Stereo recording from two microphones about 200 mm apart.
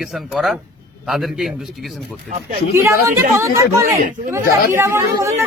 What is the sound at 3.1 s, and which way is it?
Speech, 15° right (ahead or behind).